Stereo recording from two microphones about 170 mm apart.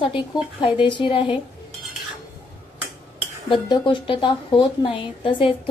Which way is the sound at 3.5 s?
30° left (ahead or behind).